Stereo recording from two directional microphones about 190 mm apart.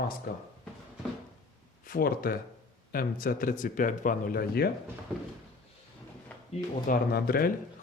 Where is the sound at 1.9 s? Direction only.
50° left (ahead or behind).